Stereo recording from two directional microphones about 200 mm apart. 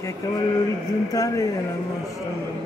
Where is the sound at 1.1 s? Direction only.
15° left (ahead or behind).